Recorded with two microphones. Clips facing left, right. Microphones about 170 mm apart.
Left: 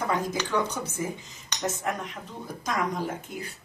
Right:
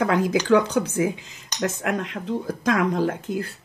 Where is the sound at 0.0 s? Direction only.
90° right.